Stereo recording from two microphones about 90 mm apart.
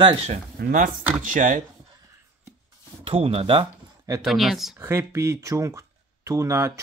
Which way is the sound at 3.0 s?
90° right.